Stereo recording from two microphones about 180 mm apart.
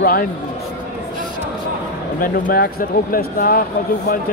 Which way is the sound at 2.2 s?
50° left (ahead or behind).